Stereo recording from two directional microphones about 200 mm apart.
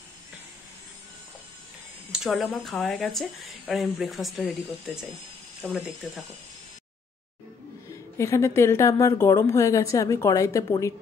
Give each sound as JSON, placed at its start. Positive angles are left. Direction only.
{"t": 2.1, "sound": "speech", "side_deg": 0}
{"t": 8.2, "sound": "a woman's voice", "side_deg": 15}